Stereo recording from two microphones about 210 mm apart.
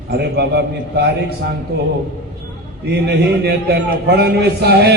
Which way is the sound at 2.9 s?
50° right (ahead or behind).